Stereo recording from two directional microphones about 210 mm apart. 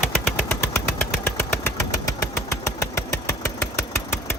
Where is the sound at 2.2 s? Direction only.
15° left (ahead or behind).